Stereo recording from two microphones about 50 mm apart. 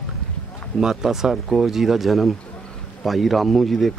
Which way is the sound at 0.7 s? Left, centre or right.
Centre.